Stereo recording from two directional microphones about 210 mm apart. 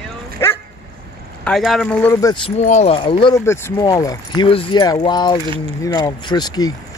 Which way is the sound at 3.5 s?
10° left (ahead or behind).